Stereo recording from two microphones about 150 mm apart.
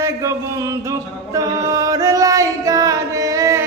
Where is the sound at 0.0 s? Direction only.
20° right (ahead or behind).